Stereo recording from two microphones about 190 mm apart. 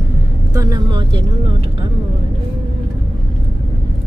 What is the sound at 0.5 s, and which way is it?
Vehicle, 20° right (ahead or behind).